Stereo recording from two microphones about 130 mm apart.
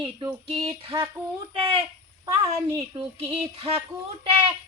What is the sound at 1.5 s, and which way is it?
Speech, 45° right (ahead or behind).